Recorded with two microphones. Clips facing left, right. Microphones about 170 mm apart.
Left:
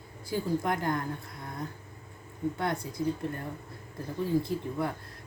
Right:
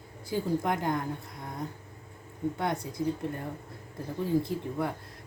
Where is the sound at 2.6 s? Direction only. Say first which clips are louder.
Right 1 dB; 20° right (ahead or behind).